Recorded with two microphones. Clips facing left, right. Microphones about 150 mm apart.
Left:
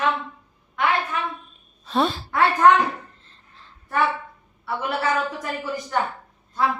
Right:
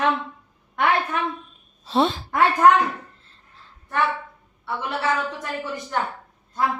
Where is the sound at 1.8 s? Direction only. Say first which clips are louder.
Right 2 dB; 25° right (ahead or behind).